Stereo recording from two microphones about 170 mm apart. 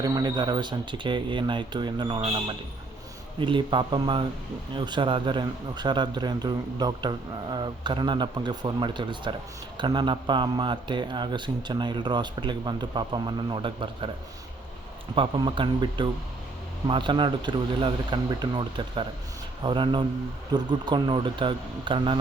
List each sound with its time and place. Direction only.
0.0 s a man's voice: 25° right (ahead or behind)
15.1 s a man's voice: 30° right (ahead or behind)